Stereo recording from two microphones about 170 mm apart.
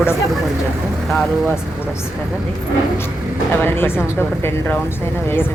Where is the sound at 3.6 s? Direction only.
10° left (ahead or behind).